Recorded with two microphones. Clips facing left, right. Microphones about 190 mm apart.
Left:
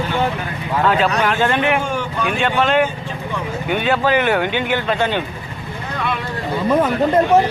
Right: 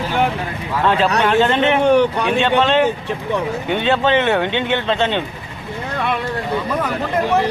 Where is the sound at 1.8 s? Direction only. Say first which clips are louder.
Right 9 dB; 65° right (ahead or behind).